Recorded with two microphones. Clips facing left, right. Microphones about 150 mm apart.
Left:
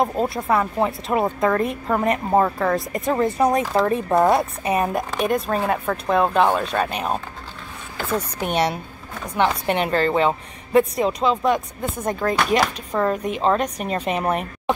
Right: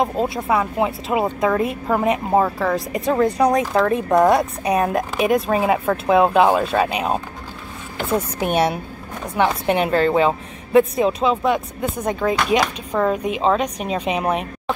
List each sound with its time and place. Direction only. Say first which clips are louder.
0.0 s a woman's voice: right 1 dB; centre (ahead or behind)
8.4 s a woman's voice: right 2 dB; 5° right (ahead or behind)